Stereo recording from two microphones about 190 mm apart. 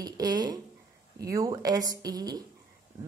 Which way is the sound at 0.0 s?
20° right (ahead or behind).